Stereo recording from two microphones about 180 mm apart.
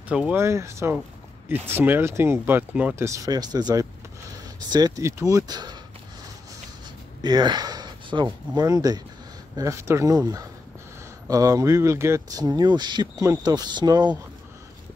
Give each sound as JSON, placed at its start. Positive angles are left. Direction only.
{"t": 0.1, "sound": "speech", "side_deg": -5}
{"t": 7.2, "sound": "speech", "side_deg": -20}